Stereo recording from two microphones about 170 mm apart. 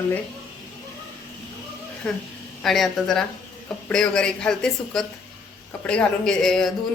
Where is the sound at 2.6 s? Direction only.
Centre (ahead or behind).